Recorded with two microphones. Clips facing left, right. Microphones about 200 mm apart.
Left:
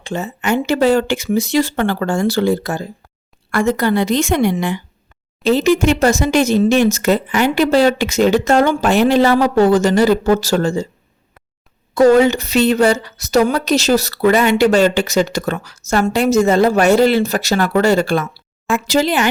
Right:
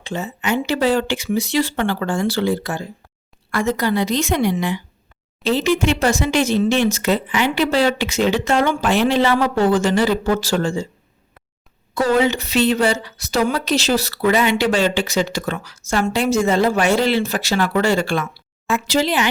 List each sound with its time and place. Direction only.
0.0 s a woman's voice: 45° left (ahead or behind)
3.5 s a woman's voice: 50° left (ahead or behind)
11.9 s a woman's voice: 45° left (ahead or behind)